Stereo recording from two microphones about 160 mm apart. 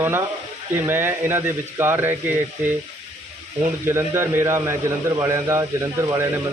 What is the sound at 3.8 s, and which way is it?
Speech, 15° right (ahead or behind).